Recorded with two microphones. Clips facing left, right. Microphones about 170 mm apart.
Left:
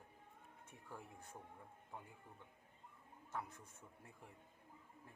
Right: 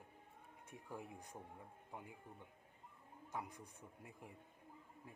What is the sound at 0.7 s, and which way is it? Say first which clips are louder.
Speech: right 5 dB; 15° right (ahead or behind).